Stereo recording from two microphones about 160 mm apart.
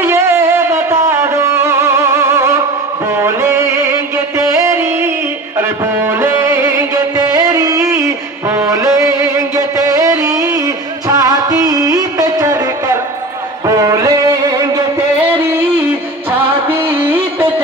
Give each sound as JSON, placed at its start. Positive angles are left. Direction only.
{"t": 0.0, "sound": "music", "side_deg": -15}
{"t": 11.1, "sound": "music of bollywood", "side_deg": -20}
{"t": 13.8, "sound": "music", "side_deg": -20}
{"t": 16.6, "sound": "music", "side_deg": -15}